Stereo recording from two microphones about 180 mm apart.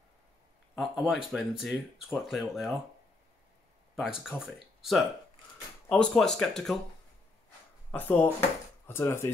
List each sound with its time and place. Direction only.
0.7 s speech: centre (ahead or behind)
3.9 s speech: 5° right (ahead or behind)
7.9 s speech: 10° left (ahead or behind)